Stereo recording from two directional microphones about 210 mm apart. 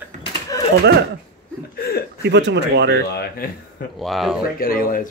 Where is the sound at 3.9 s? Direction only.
Centre (ahead or behind).